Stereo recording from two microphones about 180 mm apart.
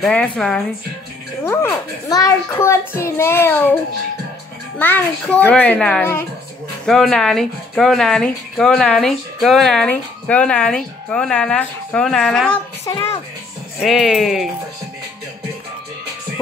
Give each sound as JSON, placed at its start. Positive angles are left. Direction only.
{"t": 0.0, "sound": "speech", "side_deg": 5}
{"t": 1.4, "sound": "a child's voice", "side_deg": 15}
{"t": 4.7, "sound": "a child's voice", "side_deg": 10}
{"t": 12.8, "sound": "a child's voice", "side_deg": 20}
{"t": 13.7, "sound": "speech", "side_deg": 0}